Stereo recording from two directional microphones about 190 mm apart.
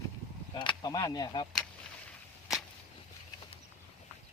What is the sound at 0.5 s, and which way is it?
Speech, 25° left (ahead or behind).